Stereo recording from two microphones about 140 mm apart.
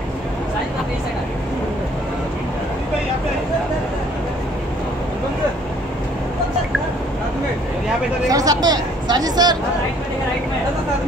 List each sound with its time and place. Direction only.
8.3 s speech: 25° right (ahead or behind)